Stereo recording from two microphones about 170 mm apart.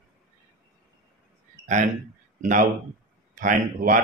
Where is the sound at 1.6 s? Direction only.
45° right (ahead or behind).